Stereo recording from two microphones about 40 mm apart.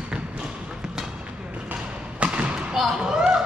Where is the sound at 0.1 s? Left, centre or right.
Right.